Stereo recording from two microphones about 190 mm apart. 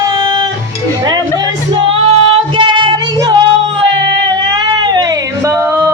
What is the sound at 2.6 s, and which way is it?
Child singing, 25° right (ahead or behind).